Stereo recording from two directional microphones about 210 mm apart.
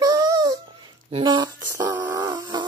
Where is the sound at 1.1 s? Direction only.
20° right (ahead or behind).